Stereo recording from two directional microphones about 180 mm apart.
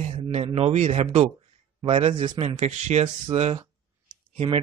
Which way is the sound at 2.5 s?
40° right (ahead or behind).